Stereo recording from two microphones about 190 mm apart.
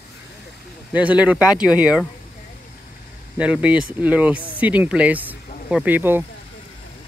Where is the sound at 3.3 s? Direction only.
5° right (ahead or behind).